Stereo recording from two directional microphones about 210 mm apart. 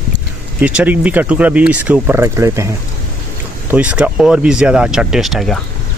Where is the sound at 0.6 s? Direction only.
5° right (ahead or behind).